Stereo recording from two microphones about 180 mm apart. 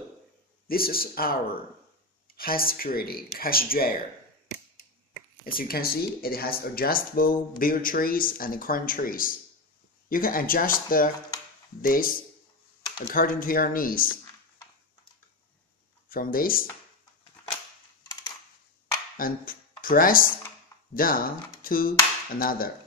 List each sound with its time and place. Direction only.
0.7 s speech: 55° left (ahead or behind)
5.4 s speech: 55° left (ahead or behind)
16.1 s speech: 50° left (ahead or behind)
19.1 s speech: 50° left (ahead or behind)
21.6 s a sound: 50° left (ahead or behind)